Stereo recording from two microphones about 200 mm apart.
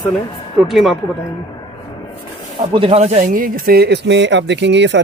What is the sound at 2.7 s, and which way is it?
Speech, 30° right (ahead or behind).